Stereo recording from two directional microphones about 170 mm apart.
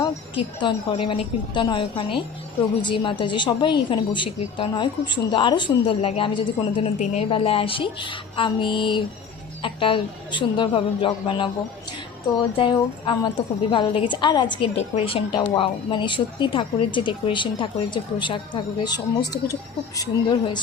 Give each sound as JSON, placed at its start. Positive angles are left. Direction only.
{"t": 0.0, "sound": "a woman's voice", "side_deg": 30}
{"t": 7.0, "sound": "a woman's voice", "side_deg": 40}